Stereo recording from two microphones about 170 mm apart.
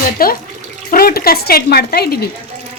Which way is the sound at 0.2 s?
60° left (ahead or behind).